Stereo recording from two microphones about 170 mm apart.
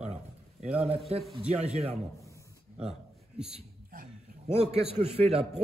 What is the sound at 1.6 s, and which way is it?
Speech, 35° right (ahead or behind).